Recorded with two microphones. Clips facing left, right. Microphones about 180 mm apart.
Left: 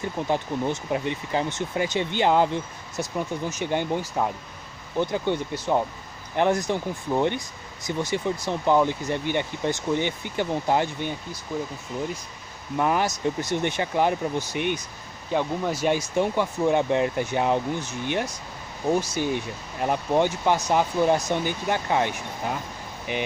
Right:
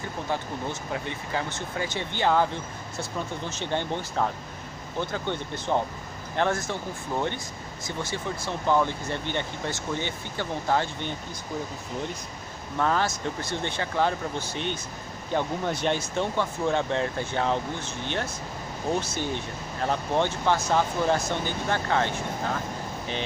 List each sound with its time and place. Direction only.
0.3 s speech: 20° left (ahead or behind)
8.5 s speech: 15° left (ahead or behind)
12.7 s speech: 15° left (ahead or behind)